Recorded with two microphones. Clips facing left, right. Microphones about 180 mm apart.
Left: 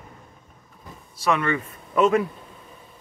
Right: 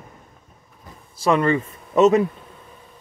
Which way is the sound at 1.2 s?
30° right (ahead or behind).